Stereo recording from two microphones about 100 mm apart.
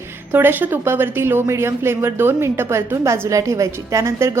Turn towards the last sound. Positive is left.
turn(degrees=-30)  # may be behind; listen again after turning